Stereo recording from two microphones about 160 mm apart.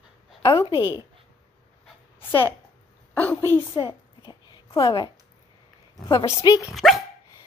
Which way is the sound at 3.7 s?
30° left (ahead or behind).